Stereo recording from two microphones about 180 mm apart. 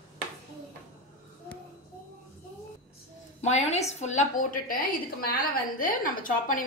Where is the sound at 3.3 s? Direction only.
40° left (ahead or behind).